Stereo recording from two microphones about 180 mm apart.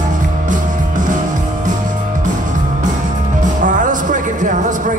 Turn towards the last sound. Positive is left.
turn(degrees=-45)  # may be behind; listen again after turning